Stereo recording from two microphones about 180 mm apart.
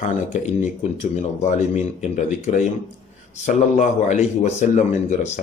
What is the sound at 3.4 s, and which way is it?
Speech, 45° left (ahead or behind).